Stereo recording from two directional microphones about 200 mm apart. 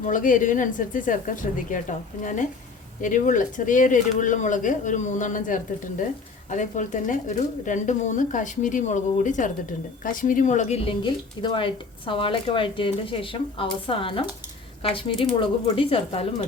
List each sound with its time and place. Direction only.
0.0 s speech: 40° left (ahead or behind)